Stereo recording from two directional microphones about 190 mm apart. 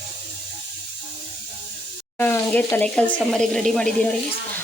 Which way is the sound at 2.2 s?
10° left (ahead or behind).